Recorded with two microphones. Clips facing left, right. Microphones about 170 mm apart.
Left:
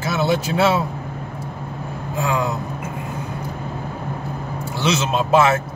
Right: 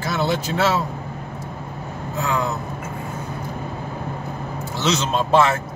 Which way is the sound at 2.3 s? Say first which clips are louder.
Left 1 dB; 10° left (ahead or behind).